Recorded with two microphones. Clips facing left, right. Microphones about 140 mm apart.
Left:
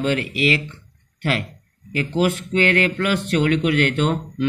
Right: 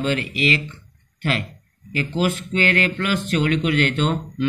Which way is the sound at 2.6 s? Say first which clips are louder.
Left 3 dB; 70° left (ahead or behind).